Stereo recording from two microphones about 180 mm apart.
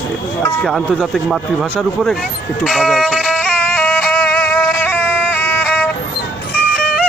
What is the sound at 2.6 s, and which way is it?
Music, centre (ahead or behind).